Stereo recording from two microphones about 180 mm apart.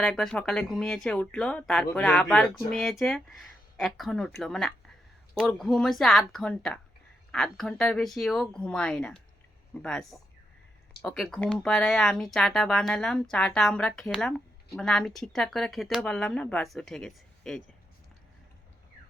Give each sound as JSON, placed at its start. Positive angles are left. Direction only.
{"t": 0.0, "sound": "speech", "side_deg": 5}